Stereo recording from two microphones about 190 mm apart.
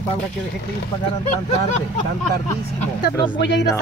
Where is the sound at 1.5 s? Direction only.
35° left (ahead or behind).